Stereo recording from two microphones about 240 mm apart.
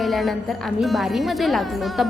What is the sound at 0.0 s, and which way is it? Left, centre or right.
A woman's voice, centre.